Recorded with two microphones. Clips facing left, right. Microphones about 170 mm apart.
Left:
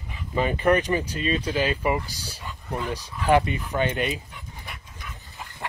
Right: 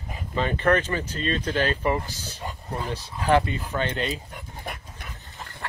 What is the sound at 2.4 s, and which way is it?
Speech, 40° right (ahead or behind).